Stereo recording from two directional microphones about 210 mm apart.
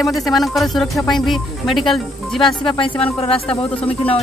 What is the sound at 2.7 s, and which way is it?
Speech, 25° left (ahead or behind).